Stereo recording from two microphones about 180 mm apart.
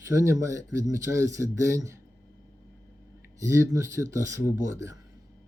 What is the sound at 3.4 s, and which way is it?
Speech, 15° right (ahead or behind).